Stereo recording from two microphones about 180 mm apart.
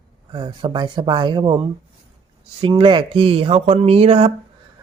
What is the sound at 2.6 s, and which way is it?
Speech, 25° right (ahead or behind).